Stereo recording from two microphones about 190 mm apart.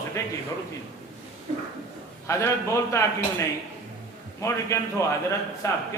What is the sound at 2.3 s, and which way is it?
Speech, 15° left (ahead or behind).